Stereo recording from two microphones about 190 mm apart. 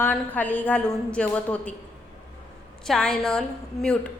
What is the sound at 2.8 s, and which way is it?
A woman's voice, 5° left (ahead or behind).